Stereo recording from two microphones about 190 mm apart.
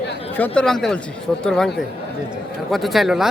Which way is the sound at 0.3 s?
5° left (ahead or behind).